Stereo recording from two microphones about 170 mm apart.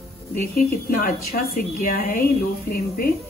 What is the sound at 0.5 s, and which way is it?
A woman's voice, 60° left (ahead or behind).